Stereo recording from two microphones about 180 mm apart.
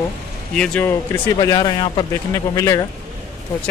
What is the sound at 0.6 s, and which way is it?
Speech, 10° left (ahead or behind).